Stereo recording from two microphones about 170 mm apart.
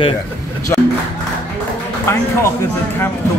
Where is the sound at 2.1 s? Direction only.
15° left (ahead or behind).